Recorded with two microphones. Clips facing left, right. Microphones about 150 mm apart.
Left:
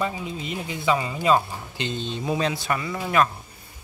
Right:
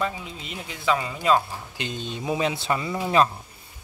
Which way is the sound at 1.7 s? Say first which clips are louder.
Left 3 dB; 10° right (ahead or behind).